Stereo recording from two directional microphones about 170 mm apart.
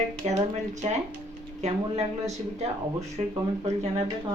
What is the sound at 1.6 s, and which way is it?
Speech, 40° right (ahead or behind).